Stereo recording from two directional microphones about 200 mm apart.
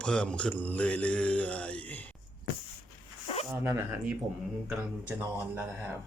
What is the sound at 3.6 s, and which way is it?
A man's voice, 10° right (ahead or behind).